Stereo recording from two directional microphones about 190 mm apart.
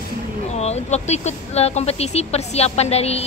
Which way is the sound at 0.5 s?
35° left (ahead or behind).